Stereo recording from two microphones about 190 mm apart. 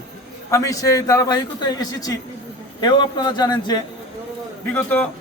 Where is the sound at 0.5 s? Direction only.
15° left (ahead or behind).